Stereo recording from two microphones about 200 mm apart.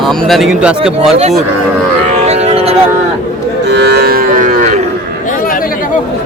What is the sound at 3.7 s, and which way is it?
Moo, 55° right (ahead or behind).